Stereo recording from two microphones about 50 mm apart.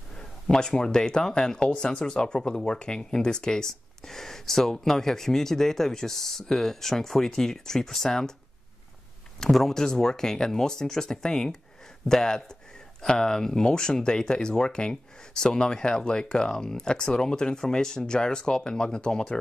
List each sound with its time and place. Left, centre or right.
0.1 s speech: centre
9.4 s speech: centre